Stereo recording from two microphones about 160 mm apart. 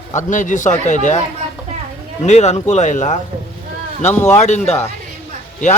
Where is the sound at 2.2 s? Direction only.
45° left (ahead or behind).